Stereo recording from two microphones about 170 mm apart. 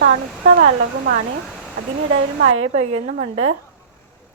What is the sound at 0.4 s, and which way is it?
Speech, 80° right.